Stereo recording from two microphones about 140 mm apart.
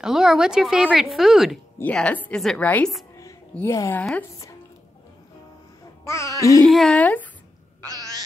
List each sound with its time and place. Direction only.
0.0 s a woman's voice: 5° right (ahead or behind)
1.8 s a woman's voice: 10° left (ahead or behind)
3.5 s music: 20° left (ahead or behind)
4.0 s a woman's voice: 10° left (ahead or behind)
6.0 s music: 20° left (ahead or behind)
6.6 s a woman's voice: centre (ahead or behind)
7.8 s cat: 25° right (ahead or behind)